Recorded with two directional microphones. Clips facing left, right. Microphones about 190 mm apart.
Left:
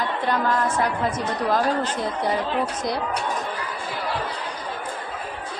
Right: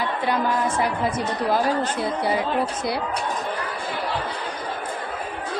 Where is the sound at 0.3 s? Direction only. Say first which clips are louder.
Even; 10° right (ahead or behind).